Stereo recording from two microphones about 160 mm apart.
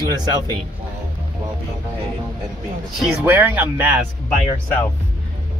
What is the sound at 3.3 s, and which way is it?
Speech, 10° right (ahead or behind).